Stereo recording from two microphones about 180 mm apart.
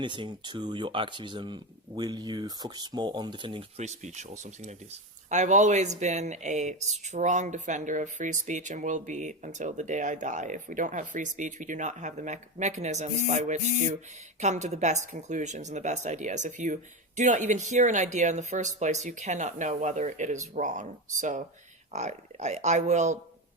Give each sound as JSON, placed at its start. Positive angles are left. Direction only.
{"t": 0.0, "sound": "speech", "side_deg": -25}